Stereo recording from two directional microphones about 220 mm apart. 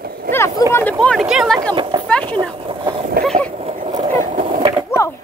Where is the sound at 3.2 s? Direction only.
40° right (ahead or behind).